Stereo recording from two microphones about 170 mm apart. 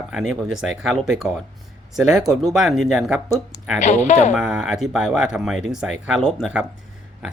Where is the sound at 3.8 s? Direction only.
45° left (ahead or behind).